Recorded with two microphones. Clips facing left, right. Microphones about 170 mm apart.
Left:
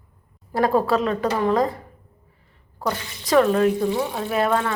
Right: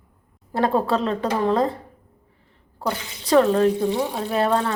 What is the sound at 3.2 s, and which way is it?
Speech, 30° right (ahead or behind).